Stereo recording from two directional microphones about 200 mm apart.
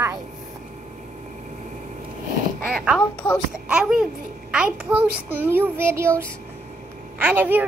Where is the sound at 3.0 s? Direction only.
10° left (ahead or behind).